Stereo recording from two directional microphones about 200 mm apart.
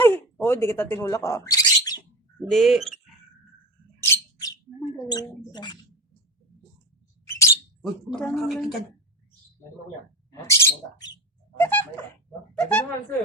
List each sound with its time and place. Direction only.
0.4 s speech: 10° left (ahead or behind)
2.5 s a woman's voice: centre (ahead or behind)
4.0 s bird: 15° left (ahead or behind)
4.9 s speech: 20° left (ahead or behind)
7.3 s mouse: 15° left (ahead or behind)
7.8 s a woman's voice: 5° left (ahead or behind)
10.5 s speech: 15° left (ahead or behind)